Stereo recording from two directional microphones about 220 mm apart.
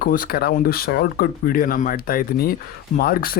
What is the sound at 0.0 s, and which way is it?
Speech, 40° left (ahead or behind).